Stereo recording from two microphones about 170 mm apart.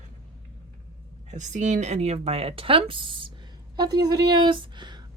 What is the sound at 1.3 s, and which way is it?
Speech, 45° right (ahead or behind).